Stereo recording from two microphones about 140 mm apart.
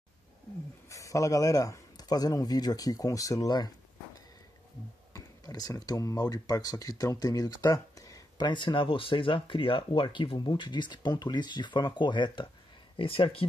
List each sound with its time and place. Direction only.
0.8 s speech: 25° left (ahead or behind)
5.1 s speech: 25° left (ahead or behind)